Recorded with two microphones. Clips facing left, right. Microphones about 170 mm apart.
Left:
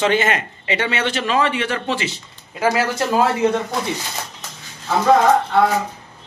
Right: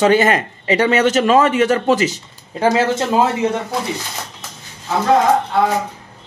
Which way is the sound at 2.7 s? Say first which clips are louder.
Right 3 dB; 25° right (ahead or behind).